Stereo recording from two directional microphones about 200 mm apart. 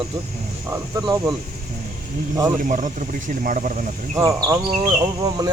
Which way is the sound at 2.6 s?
40° right (ahead or behind).